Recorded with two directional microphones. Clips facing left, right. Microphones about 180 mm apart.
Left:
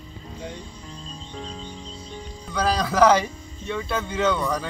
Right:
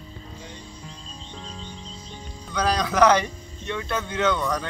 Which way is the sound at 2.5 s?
5° left (ahead or behind).